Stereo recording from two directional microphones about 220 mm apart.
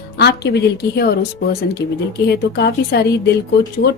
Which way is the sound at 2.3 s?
50° left (ahead or behind).